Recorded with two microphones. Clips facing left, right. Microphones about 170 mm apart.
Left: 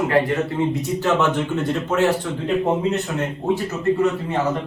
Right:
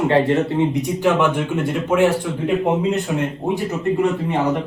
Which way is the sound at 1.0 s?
10° right (ahead or behind).